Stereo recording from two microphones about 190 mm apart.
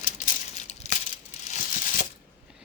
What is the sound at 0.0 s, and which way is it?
Crumpling, 35° left (ahead or behind).